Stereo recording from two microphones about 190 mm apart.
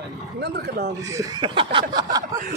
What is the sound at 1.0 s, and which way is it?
Speech, 15° right (ahead or behind).